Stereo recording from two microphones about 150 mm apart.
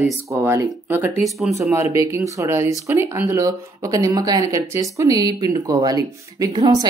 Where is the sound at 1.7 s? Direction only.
20° right (ahead or behind).